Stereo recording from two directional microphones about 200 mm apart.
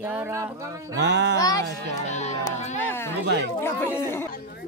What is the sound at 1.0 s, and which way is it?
Speech, 60° right (ahead or behind).